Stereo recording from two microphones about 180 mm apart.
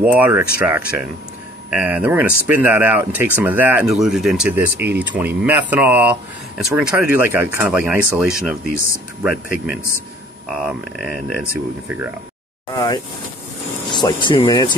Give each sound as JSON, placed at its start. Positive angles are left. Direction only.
{"t": 0.0, "sound": "speech", "side_deg": -10}
{"t": 12.7, "sound": "speech", "side_deg": 25}